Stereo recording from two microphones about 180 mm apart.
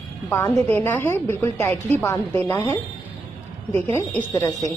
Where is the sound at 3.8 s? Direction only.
15° left (ahead or behind).